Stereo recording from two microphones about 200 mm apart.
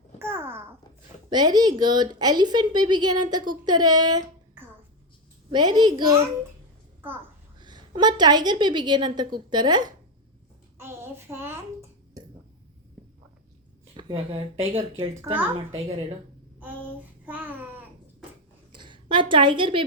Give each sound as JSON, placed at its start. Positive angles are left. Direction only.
{"t": 0.2, "sound": "babbling", "side_deg": -10}
{"t": 1.3, "sound": "a woman's voice", "side_deg": -20}
{"t": 7.0, "sound": "a woman's voice", "side_deg": -10}
{"t": 7.6, "sound": "a woman's voice", "side_deg": -20}
{"t": 13.9, "sound": "a woman's voice", "side_deg": -25}
{"t": 15.2, "sound": "a woman's voice", "side_deg": -10}
{"t": 17.2, "sound": "babbling", "side_deg": -10}
{"t": 18.7, "sound": "a woman's voice", "side_deg": -25}